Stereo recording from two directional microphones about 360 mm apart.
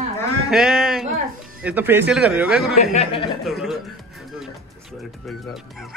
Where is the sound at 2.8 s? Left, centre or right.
Centre.